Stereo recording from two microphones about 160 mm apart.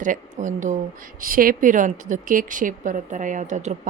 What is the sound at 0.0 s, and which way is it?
Speech, 50° right (ahead or behind).